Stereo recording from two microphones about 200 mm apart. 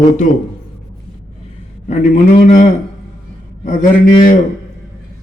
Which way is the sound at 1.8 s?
35° left (ahead or behind).